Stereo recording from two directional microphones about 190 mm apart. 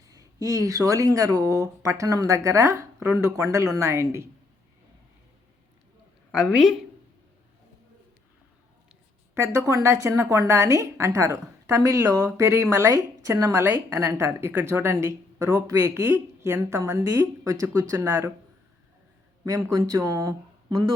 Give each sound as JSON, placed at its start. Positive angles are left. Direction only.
{"t": 0.1, "sound": "a woman's voice", "side_deg": -20}
{"t": 6.3, "sound": "a woman's voice", "side_deg": -5}
{"t": 9.3, "sound": "a woman's voice", "side_deg": -15}
{"t": 19.5, "sound": "a woman's voice", "side_deg": -15}